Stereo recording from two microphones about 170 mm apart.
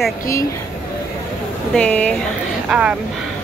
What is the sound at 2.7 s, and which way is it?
Speech, 5° right (ahead or behind).